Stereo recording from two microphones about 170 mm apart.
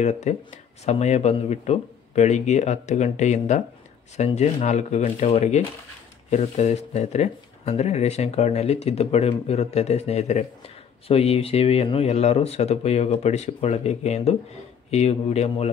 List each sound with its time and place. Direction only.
0.0 s speech: 40° left (ahead or behind)